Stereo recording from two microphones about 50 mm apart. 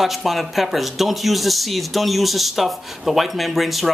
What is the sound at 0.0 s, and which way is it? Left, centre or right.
Speech, centre.